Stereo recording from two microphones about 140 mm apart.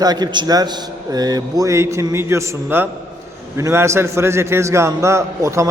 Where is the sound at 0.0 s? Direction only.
30° right (ahead or behind).